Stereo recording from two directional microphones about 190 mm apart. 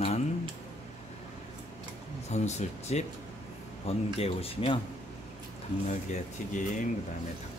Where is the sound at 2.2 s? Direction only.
35° left (ahead or behind).